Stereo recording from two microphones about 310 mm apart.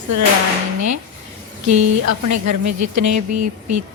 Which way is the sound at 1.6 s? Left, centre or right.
Right.